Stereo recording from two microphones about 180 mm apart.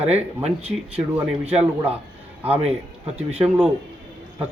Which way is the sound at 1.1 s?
10° right (ahead or behind).